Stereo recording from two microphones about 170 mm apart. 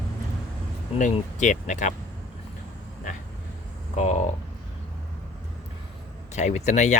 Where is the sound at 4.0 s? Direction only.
45° left (ahead or behind).